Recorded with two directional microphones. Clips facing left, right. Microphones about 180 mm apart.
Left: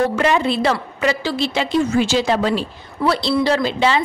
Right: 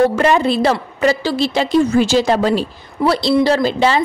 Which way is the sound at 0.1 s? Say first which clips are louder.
Right 3 dB; 40° right (ahead or behind).